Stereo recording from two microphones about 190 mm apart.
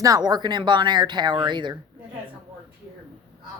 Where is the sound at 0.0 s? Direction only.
20° right (ahead or behind).